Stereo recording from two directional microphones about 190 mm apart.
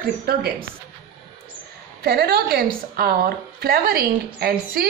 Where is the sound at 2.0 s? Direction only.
55° right (ahead or behind).